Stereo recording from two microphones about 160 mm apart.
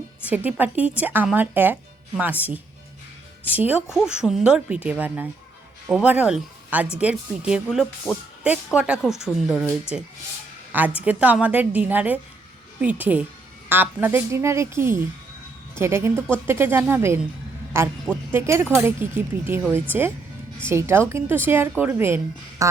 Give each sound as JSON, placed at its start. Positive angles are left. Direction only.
{"t": 0.3, "sound": "speech", "side_deg": -10}